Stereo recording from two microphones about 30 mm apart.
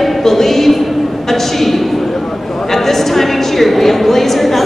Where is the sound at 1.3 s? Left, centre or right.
Centre.